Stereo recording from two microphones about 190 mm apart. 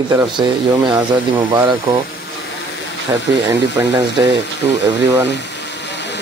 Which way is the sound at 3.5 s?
15° right (ahead or behind).